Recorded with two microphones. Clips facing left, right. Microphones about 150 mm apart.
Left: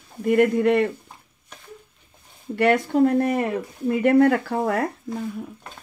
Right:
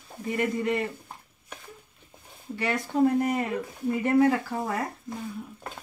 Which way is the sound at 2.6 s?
65° left (ahead or behind).